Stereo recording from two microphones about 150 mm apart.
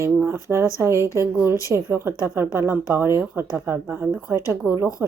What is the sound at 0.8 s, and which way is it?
Speech, 20° right (ahead or behind).